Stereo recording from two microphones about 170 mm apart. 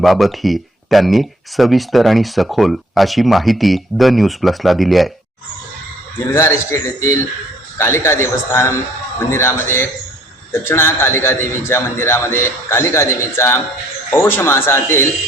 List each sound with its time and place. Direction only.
0.0 s speech: centre (ahead or behind)
6.3 s a man's voice: 15° left (ahead or behind)